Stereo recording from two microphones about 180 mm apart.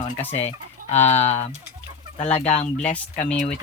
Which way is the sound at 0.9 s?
35° left (ahead or behind).